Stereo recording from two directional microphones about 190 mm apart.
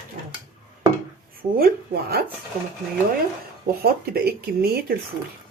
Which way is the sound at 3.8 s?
55° right (ahead or behind).